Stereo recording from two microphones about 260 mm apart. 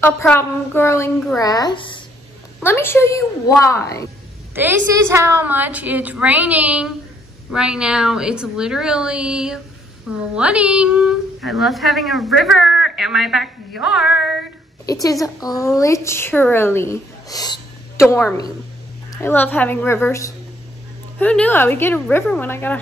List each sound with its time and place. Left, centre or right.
0.0 s a woman's voice: centre
4.6 s a woman's voice: centre
15.0 s a woman's voice: centre
19.2 s a woman's voice: centre